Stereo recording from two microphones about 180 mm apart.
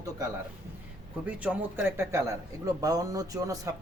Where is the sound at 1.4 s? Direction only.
10° right (ahead or behind).